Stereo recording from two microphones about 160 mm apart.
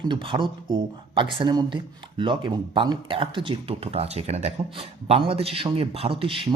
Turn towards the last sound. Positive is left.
turn(degrees=-35)  # may be behind; listen again after turning